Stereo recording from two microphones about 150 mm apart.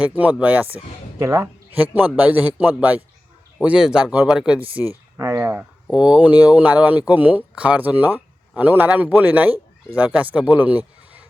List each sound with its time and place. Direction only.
0.0 s a man's voice: 10° right (ahead or behind)
5.1 s speech: 20° right (ahead or behind)